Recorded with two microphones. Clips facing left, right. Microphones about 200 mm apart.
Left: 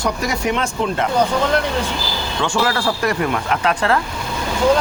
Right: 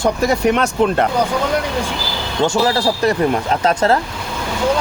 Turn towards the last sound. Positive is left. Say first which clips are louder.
# right 3 dB
turn(degrees=-35)  # may be behind; listen again after turning